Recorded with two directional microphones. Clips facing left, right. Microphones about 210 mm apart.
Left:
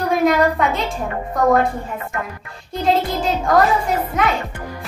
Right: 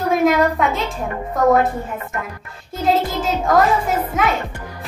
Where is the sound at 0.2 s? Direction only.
Centre (ahead or behind).